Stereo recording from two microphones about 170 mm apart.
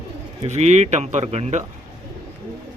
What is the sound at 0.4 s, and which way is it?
Speech, 40° right (ahead or behind).